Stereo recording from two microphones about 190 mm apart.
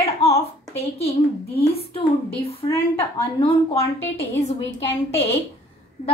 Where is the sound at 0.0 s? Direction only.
30° left (ahead or behind).